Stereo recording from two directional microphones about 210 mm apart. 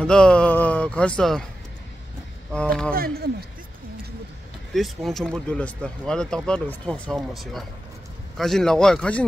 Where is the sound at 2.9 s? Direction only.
45° right (ahead or behind).